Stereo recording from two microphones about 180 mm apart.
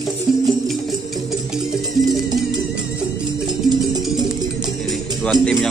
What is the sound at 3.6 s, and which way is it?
Music, 25° right (ahead or behind).